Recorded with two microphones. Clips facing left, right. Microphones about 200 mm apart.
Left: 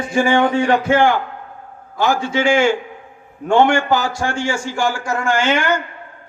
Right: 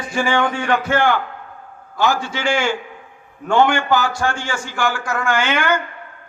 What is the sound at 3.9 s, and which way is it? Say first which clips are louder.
Speech: right 1 dB; 30° left (ahead or behind).